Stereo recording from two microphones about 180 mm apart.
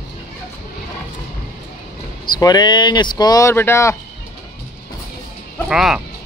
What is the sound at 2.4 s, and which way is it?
Speech, 25° left (ahead or behind).